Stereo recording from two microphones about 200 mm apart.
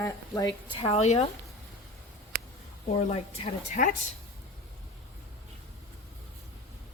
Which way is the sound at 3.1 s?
30° left (ahead or behind).